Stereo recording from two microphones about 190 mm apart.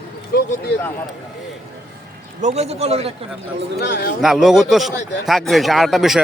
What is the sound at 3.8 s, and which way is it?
Speech, 60° left (ahead or behind).